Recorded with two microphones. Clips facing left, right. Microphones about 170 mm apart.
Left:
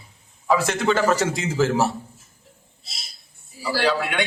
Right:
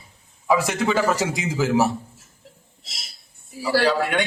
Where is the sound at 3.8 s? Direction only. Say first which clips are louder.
Even; 45° right (ahead or behind).